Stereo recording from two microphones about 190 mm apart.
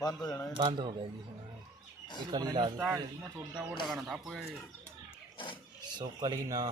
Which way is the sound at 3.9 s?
Centre (ahead or behind).